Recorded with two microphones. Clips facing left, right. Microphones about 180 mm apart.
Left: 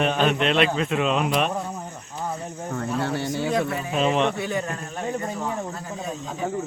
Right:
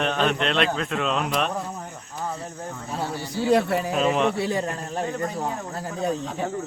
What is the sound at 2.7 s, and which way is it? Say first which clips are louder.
Speech: left 6 dB; 65° left (ahead or behind).